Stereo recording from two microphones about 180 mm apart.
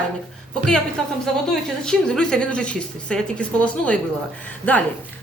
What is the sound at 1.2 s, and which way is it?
A woman's voice, 5° left (ahead or behind).